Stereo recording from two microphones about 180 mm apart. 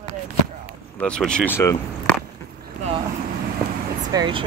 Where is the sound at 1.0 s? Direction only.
5° left (ahead or behind).